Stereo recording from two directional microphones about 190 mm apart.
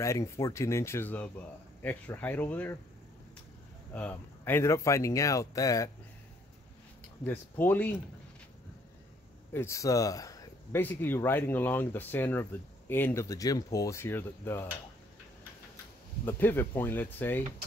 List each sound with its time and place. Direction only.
0.0 s speech: 15° left (ahead or behind)
3.9 s speech: 10° left (ahead or behind)
7.2 s speech: 10° left (ahead or behind)
9.5 s speech: 15° left (ahead or behind)
16.3 s speech: 10° left (ahead or behind)